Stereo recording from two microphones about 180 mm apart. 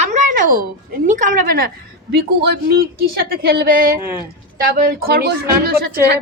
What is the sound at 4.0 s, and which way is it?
Speech, 15° right (ahead or behind).